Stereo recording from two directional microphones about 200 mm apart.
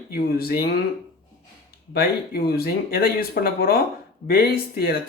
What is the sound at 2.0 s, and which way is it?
A man's voice, 50° left (ahead or behind).